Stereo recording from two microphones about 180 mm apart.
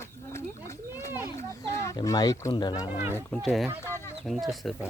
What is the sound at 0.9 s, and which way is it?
Children playing, 10° right (ahead or behind).